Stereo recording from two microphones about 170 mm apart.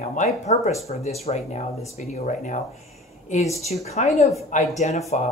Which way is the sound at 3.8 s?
40° left (ahead or behind).